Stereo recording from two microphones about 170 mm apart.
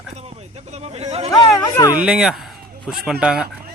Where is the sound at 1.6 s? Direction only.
20° left (ahead or behind).